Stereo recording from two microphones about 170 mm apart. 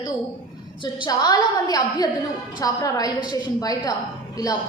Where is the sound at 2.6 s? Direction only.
20° left (ahead or behind).